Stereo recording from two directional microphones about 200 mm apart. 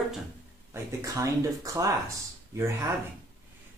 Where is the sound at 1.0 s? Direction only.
15° right (ahead or behind).